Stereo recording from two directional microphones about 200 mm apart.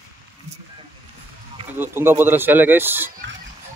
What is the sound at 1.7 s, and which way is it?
Speech, 10° right (ahead or behind).